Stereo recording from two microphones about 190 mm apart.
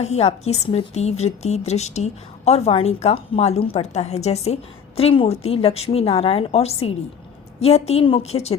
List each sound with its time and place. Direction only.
0.0 s a woman's voice: 35° left (ahead or behind)